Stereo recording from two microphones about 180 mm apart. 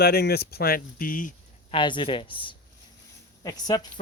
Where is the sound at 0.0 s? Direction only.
60° left (ahead or behind).